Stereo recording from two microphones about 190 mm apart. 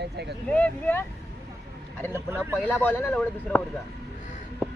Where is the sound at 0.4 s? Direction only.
5° left (ahead or behind).